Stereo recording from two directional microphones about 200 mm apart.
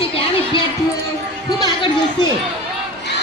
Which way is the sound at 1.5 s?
20° left (ahead or behind).